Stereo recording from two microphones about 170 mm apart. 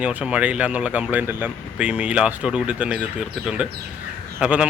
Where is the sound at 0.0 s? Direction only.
10° right (ahead or behind).